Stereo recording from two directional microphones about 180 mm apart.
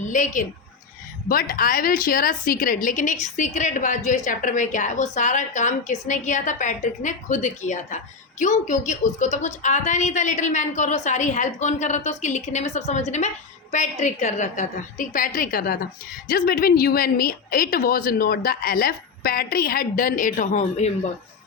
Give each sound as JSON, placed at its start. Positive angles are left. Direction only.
{"t": 0.0, "sound": "a woman's voice", "side_deg": 45}